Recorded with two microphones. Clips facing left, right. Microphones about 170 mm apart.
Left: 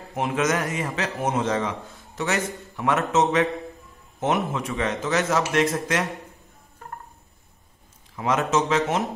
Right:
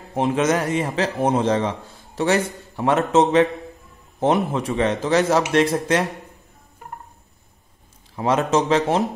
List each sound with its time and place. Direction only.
0.1 s a man's voice: 30° right (ahead or behind)
8.2 s a man's voice: 30° right (ahead or behind)